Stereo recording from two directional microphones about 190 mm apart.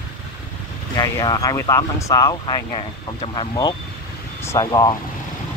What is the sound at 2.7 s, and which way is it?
Speech, 30° left (ahead or behind).